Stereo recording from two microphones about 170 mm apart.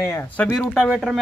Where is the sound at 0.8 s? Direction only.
5° right (ahead or behind).